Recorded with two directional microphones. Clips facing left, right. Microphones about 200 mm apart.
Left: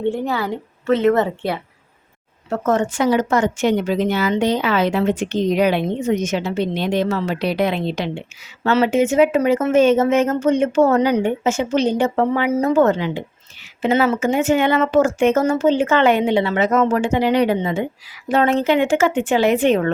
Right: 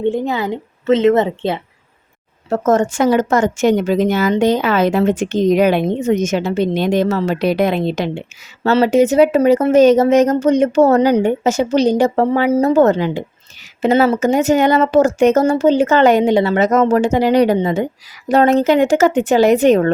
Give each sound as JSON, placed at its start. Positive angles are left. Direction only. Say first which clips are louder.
{"t": 0.1, "sound": "a woman's voice", "louder": "right 3 dB", "side_deg": -20}
{"t": 2.5, "sound": "speech", "louder": "right 4 dB", "side_deg": -45}
{"t": 8.6, "sound": "speech", "louder": "right 4 dB", "side_deg": -35}